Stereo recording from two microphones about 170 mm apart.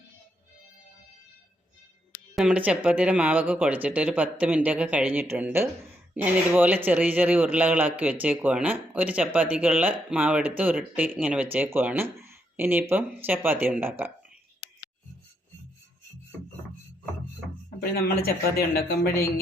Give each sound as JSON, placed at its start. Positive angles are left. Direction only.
{"t": 2.3, "sound": "speech", "side_deg": -5}
{"t": 17.7, "sound": "speech", "side_deg": 65}